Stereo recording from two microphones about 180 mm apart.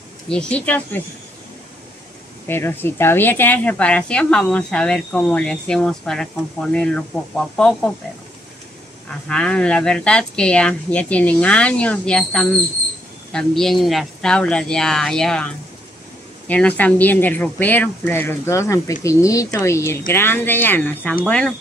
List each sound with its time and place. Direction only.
0.3 s speech: 5° left (ahead or behind)
2.4 s speech: 10° left (ahead or behind)
9.3 s speech: 5° left (ahead or behind)